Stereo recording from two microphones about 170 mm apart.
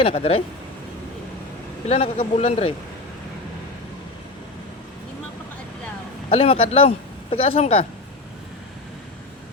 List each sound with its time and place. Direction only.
0.0 s speech: 35° left (ahead or behind)
1.9 s speech: 35° left (ahead or behind)
6.3 s speech: 35° left (ahead or behind)